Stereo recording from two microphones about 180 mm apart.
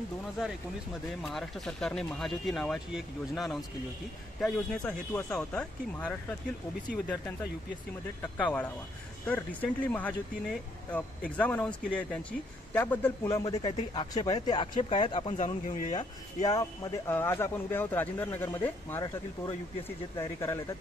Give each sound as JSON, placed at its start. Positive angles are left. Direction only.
{"t": 1.2, "sound": "speech", "side_deg": 0}
{"t": 8.2, "sound": "speech", "side_deg": 10}
{"t": 15.6, "sound": "speech", "side_deg": 45}
{"t": 16.4, "sound": "speech", "side_deg": 20}
{"t": 20.2, "sound": "speech", "side_deg": 15}